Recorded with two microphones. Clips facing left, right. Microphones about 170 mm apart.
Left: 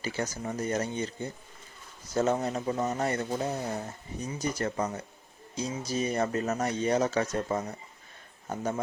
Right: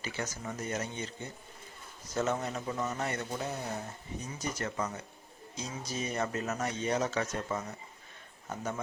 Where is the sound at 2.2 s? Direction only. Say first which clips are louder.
Left 5 dB; 35° left (ahead or behind).